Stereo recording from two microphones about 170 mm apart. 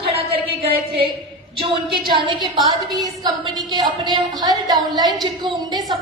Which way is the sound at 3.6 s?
25° right (ahead or behind).